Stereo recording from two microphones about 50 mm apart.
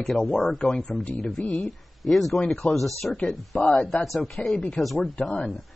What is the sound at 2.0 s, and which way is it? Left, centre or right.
Speech, centre.